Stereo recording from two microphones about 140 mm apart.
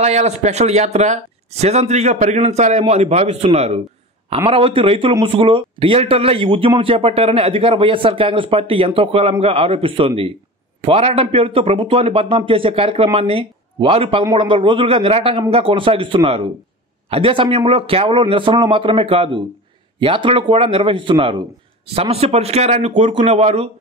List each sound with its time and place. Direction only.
0.0 s speech: 50° right (ahead or behind)
4.5 s a man's voice: 40° right (ahead or behind)